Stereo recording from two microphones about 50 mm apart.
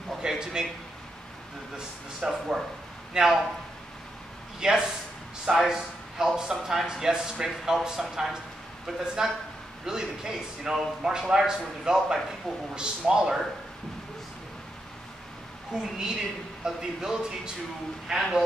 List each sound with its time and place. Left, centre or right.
0.2 s a sound: centre
2.2 s a man's voice: centre
4.6 s speech: centre
9.0 s speech: centre
15.7 s speech: centre